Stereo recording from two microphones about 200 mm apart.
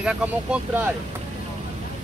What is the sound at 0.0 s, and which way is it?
Speech, 5° right (ahead or behind).